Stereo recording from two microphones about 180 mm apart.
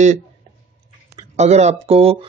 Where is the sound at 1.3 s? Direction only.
40° right (ahead or behind).